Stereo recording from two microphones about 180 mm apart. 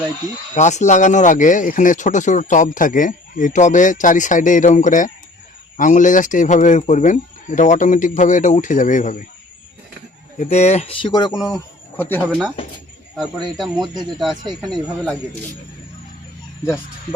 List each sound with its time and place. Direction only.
0.5 s speech: 40° left (ahead or behind)
10.3 s speech: 45° left (ahead or behind); by 11.3 s 25° left (ahead or behind)
11.4 s speech: 15° left (ahead or behind)
13.7 s speech: 25° right (ahead or behind)
14.7 s speech: centre (ahead or behind)